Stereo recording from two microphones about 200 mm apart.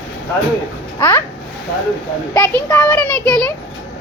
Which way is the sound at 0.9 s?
10° left (ahead or behind).